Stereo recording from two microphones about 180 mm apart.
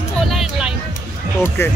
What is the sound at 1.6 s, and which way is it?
Speech, 15° left (ahead or behind).